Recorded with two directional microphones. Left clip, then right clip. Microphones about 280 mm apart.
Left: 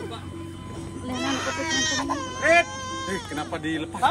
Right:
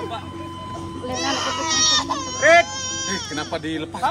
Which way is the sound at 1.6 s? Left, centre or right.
Centre.